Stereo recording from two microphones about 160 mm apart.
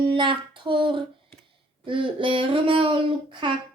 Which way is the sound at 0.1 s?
30° right (ahead or behind).